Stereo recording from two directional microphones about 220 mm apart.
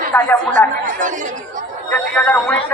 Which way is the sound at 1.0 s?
35° right (ahead or behind).